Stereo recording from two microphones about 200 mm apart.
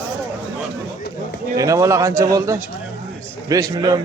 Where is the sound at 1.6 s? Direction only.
15° right (ahead or behind).